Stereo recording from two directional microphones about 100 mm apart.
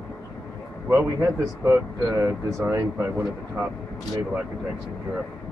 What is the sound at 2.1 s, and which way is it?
Speech, 25° right (ahead or behind).